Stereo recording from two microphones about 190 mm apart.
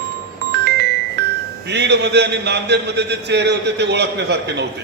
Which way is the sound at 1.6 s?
65° right (ahead or behind).